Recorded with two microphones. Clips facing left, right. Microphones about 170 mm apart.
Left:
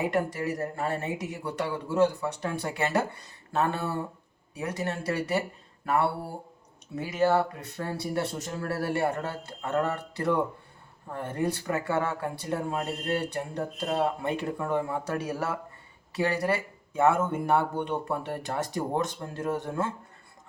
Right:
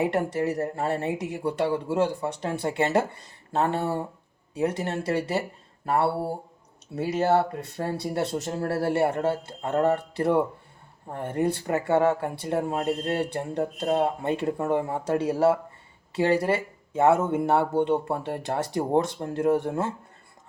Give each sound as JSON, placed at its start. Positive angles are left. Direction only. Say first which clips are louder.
{"t": 0.1, "sound": "speech", "louder": "right 3 dB", "side_deg": -25}